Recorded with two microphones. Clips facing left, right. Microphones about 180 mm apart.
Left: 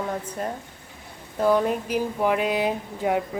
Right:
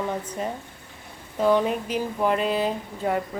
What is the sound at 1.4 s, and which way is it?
Speech, 10° left (ahead or behind).